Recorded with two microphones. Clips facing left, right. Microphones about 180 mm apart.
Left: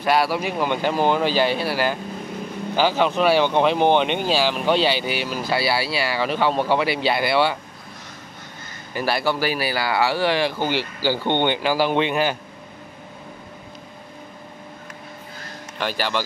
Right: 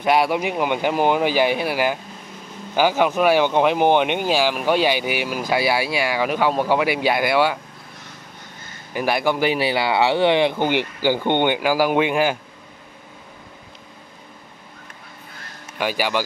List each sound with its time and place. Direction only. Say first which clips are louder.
0.0 s speech: right 2 dB; 20° right (ahead or behind)
8.9 s speech: right 2 dB; 15° right (ahead or behind)
15.8 s speech: right 3 dB; 10° right (ahead or behind)